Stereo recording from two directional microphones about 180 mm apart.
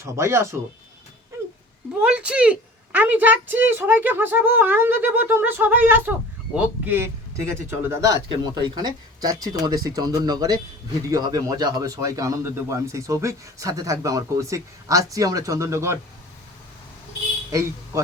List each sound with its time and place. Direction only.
0.0 s a woman's voice: 15° right (ahead or behind)
2.0 s a woman's voice: 5° right (ahead or behind)
17.5 s a man's voice: 15° right (ahead or behind)